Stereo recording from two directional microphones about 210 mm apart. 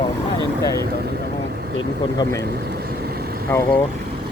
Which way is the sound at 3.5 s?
10° left (ahead or behind).